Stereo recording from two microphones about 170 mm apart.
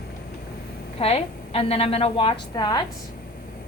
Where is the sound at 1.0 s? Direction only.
35° left (ahead or behind).